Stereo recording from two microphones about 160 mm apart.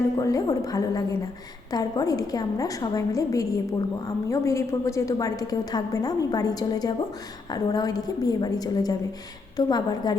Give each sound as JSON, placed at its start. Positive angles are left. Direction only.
{"t": 0.2, "sound": "a woman's voice", "side_deg": 20}